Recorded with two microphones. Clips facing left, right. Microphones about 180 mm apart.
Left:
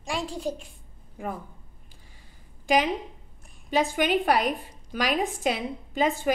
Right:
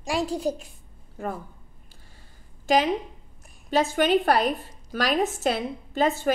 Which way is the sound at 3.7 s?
15° left (ahead or behind).